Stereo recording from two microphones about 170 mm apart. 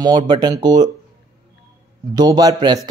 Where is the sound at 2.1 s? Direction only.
25° right (ahead or behind).